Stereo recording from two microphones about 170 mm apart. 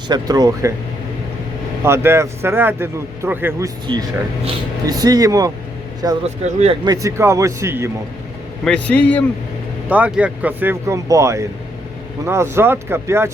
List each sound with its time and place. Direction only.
0.1 s speech: 20° right (ahead or behind)
1.8 s a man's voice: 15° right (ahead or behind)
3.9 s speech: 30° right (ahead or behind)
6.2 s speech: 40° right (ahead or behind)
6.8 s a man's voice: 20° right (ahead or behind)
8.6 s a man's voice: 5° left (ahead or behind)
9.9 s a man's voice: 10° right (ahead or behind)